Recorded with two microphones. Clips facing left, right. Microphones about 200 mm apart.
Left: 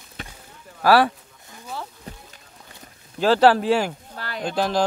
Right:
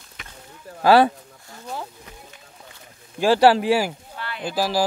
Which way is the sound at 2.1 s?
35° left (ahead or behind).